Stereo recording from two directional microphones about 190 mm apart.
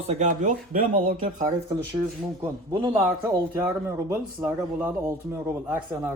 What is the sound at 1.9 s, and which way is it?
A man's voice, 20° right (ahead or behind).